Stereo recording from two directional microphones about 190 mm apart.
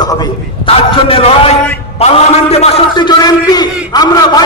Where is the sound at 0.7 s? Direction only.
30° left (ahead or behind).